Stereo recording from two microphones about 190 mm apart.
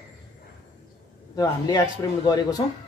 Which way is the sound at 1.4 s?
20° left (ahead or behind).